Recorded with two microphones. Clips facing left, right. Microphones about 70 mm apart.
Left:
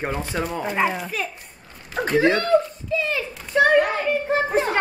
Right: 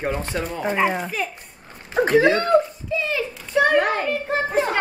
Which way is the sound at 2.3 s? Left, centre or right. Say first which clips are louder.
Right 1 dB; centre.